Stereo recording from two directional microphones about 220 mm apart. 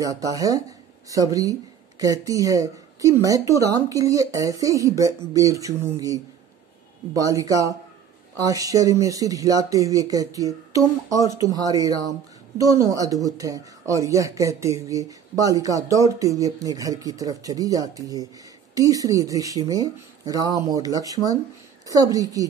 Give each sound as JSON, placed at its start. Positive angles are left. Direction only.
{"t": 0.0, "sound": "speech", "side_deg": -15}